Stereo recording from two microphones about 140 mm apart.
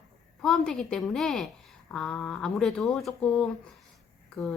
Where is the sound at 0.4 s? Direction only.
5° left (ahead or behind).